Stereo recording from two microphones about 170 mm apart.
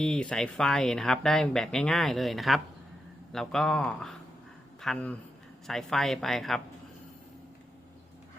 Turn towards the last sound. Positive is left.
turn(degrees=0)  # may be behind; listen again after turning